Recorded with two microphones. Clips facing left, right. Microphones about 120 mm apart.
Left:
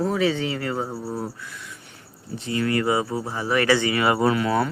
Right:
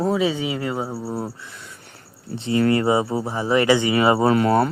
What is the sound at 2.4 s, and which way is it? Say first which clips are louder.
Speech: right 5 dB; 30° right (ahead or behind).